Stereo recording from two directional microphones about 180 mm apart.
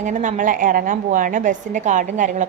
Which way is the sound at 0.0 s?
45° right (ahead or behind).